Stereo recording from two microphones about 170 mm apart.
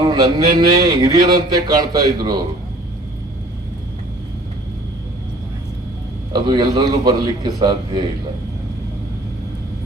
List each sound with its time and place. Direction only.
0.0 s speech: 25° right (ahead or behind)
6.3 s speech: 25° right (ahead or behind)